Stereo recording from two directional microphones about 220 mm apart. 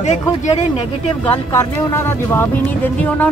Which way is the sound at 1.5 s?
10° left (ahead or behind).